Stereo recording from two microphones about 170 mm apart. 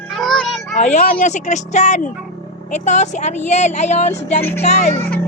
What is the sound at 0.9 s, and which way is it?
A woman's voice, 45° left (ahead or behind).